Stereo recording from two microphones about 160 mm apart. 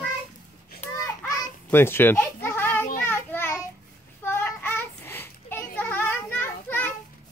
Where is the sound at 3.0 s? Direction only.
15° left (ahead or behind).